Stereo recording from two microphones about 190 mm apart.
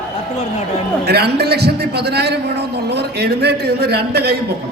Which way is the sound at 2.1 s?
60° right (ahead or behind).